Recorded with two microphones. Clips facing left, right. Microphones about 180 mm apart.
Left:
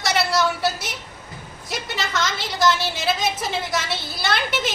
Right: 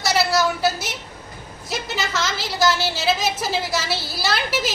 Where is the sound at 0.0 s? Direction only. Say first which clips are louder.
Right 1 dB; 5° right (ahead or behind).